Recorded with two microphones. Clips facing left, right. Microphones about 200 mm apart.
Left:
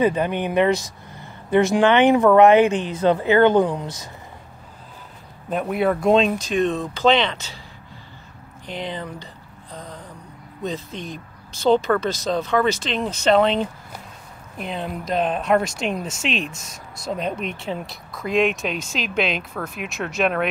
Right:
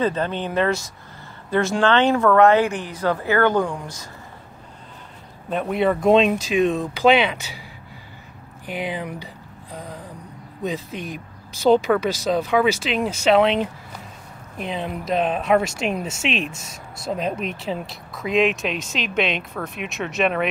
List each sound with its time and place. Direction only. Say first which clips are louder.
0.0 s speech: left 3 dB; 15° left (ahead or behind)
5.5 s speech: even; 5° left (ahead or behind)
8.6 s a sound: right 2 dB; 10° right (ahead or behind)
10.6 s speech: right 1 dB; 10° right (ahead or behind)